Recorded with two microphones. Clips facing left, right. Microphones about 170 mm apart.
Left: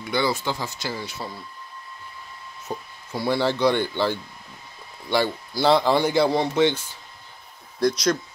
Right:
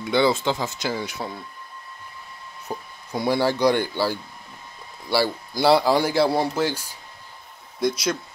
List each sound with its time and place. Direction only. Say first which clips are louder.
0.0 s speech: right 4 dB; 20° right (ahead or behind)
2.7 s speech: right 1 dB; 5° right (ahead or behind)
7.9 s speech: left 3 dB; 5° right (ahead or behind)